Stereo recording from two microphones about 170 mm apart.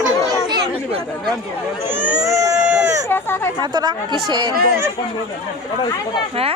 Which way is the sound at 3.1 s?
15° left (ahead or behind).